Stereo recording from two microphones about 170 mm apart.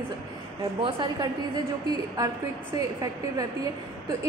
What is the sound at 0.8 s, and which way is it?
Speech, 30° right (ahead or behind).